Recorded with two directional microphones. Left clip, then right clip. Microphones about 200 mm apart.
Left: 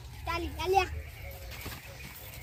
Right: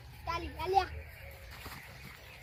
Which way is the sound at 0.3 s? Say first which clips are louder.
Left 4 dB; 10° left (ahead or behind).